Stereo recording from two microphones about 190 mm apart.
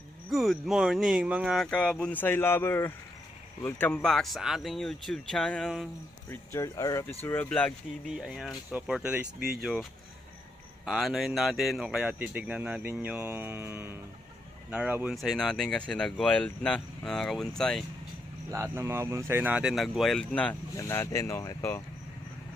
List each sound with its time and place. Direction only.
0.3 s speech: centre (ahead or behind)
6.3 s speech: 15° left (ahead or behind)
8.0 s speech: centre (ahead or behind)
9.4 s speech: 50° right (ahead or behind)
10.8 s speech: centre (ahead or behind)
18.5 s speech: 15° right (ahead or behind); by 21.8 s 15° left (ahead or behind)